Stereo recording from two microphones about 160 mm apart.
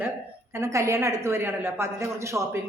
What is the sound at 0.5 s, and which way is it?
A woman's voice, 20° right (ahead or behind).